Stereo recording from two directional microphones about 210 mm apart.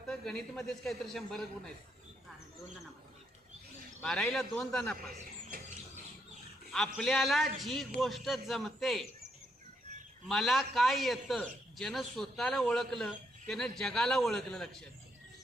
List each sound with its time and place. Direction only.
0.1 s a man's voice: 5° left (ahead or behind)
4.0 s a man's voice: 5° left (ahead or behind)
5.5 s bird: 45° right (ahead or behind)
6.7 s a man's voice: centre (ahead or behind)
10.2 s a man's voice: centre (ahead or behind)